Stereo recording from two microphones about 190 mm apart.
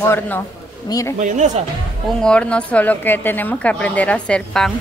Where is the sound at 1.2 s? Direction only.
40° right (ahead or behind).